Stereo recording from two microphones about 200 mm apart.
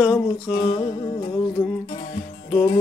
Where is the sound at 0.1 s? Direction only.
20° left (ahead or behind).